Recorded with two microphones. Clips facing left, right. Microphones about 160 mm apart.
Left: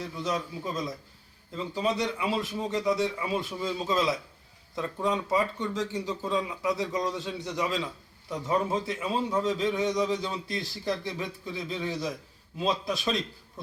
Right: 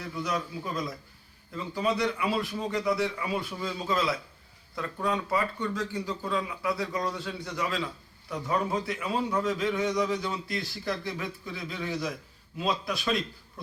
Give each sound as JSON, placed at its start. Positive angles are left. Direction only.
{"t": 0.2, "sound": "a man's voice", "side_deg": 20}